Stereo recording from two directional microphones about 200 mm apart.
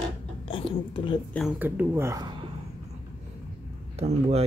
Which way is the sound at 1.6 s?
10° right (ahead or behind).